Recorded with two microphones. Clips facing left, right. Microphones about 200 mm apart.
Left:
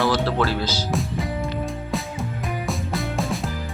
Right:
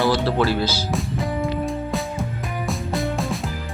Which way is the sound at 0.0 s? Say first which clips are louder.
Right 2 dB; 10° right (ahead or behind).